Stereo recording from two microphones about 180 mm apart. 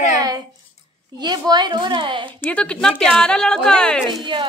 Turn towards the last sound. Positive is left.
turn(degrees=-25)  # may be behind; listen again after turning